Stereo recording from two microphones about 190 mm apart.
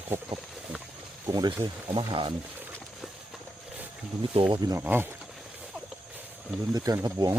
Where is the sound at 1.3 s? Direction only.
20° right (ahead or behind).